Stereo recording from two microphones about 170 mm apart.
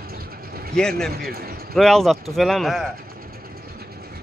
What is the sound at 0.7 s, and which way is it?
Speech, 5° left (ahead or behind).